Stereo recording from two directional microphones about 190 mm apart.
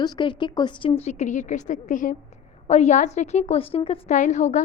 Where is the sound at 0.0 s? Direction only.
25° left (ahead or behind).